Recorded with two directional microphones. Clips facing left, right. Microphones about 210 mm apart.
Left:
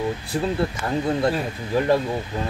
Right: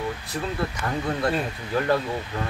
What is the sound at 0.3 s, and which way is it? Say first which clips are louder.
Speech: left 7 dB; 30° left (ahead or behind).